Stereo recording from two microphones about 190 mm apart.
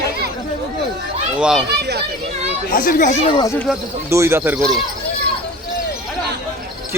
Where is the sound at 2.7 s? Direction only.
45° left (ahead or behind); by 3.5 s 25° left (ahead or behind).